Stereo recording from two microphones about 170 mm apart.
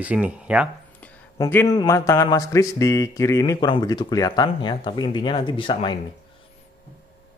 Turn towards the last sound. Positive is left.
turn(degrees=30)  # may be behind; listen again after turning